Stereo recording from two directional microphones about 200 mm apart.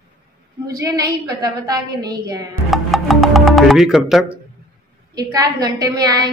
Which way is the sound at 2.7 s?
Centre (ahead or behind).